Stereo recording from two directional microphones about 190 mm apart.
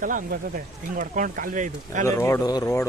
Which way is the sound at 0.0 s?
45° right (ahead or behind).